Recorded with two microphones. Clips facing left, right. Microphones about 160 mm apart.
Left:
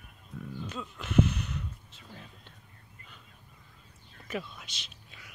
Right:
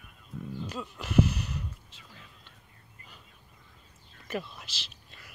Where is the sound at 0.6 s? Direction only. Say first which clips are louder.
Right 2 dB; 5° right (ahead or behind).